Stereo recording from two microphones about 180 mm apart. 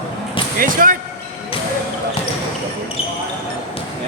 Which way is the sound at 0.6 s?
50° right (ahead or behind).